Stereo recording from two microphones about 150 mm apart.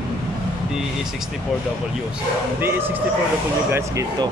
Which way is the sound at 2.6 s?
15° right (ahead or behind).